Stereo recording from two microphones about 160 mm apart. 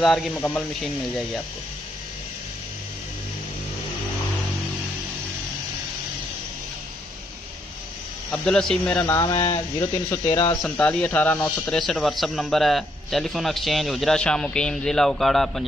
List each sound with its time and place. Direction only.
0.0 s speech: centre (ahead or behind)
0.4 s speech: 10° left (ahead or behind)
8.3 s speech: 5° left (ahead or behind)
9.0 s speech: 20° left (ahead or behind)
10.6 s speech: 10° left (ahead or behind)